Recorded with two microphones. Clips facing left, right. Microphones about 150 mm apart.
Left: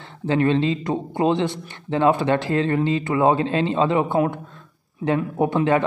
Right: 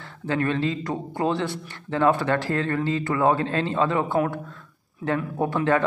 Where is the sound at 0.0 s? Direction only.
20° left (ahead or behind).